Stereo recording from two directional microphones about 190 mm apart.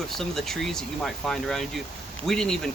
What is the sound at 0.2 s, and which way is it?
Speech, centre (ahead or behind).